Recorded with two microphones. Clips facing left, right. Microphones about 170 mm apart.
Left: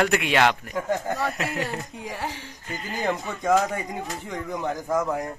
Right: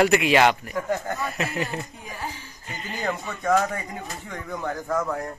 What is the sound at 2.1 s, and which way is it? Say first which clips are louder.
Speech: left 3 dB; 70° left (ahead or behind).